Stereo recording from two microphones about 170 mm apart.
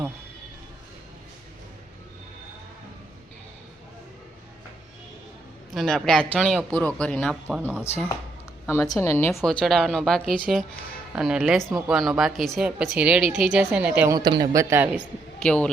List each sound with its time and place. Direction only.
5.7 s a woman's voice: centre (ahead or behind)
8.6 s a woman's voice: 15° left (ahead or behind)
9.3 s a woman's voice: centre (ahead or behind)
14.2 s a woman's voice: 25° right (ahead or behind)
15.4 s a woman's voice: 5° left (ahead or behind)